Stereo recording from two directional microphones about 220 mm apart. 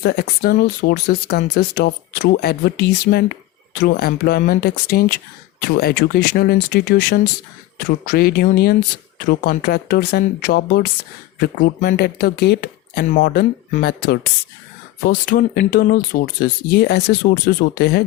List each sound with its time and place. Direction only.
0.0 s speech: 45° left (ahead or behind)